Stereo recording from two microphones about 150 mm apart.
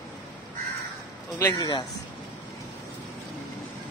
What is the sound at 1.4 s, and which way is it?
Speech, 20° left (ahead or behind).